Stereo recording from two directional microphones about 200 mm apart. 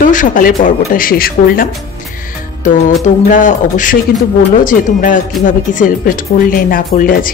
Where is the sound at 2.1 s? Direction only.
45° left (ahead or behind).